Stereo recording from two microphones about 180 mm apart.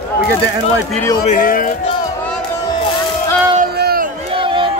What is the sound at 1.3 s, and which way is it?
Speech, 50° left (ahead or behind).